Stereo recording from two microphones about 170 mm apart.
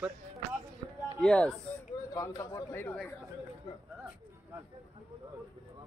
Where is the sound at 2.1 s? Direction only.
20° left (ahead or behind).